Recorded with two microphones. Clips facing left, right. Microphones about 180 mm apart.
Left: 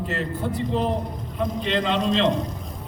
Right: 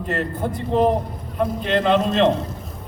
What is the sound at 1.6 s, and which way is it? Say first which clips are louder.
Speech: right 5 dB; 55° right (ahead or behind).